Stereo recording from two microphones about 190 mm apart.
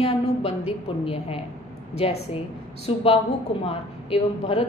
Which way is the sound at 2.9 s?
30° left (ahead or behind).